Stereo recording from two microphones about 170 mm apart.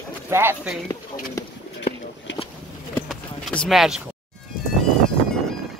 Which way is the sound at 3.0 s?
5° left (ahead or behind).